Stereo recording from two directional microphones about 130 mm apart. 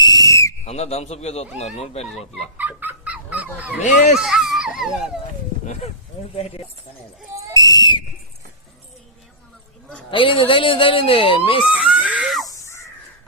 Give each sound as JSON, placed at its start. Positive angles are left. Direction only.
{"t": 0.0, "sound": "whistle", "side_deg": 30}
{"t": 0.6, "sound": "speech", "side_deg": 55}
{"t": 2.6, "sound": "dog", "side_deg": -15}
{"t": 4.2, "sound": "speech", "side_deg": -5}
{"t": 5.8, "sound": "speech", "side_deg": 55}
{"t": 7.5, "sound": "whistle", "side_deg": 30}
{"t": 10.1, "sound": "speech", "side_deg": 40}
{"t": 11.7, "sound": "screaming", "side_deg": -10}
{"t": 12.5, "sound": "crow", "side_deg": 25}